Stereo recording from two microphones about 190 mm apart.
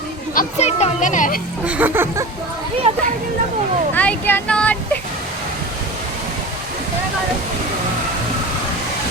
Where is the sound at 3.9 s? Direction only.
10° left (ahead or behind).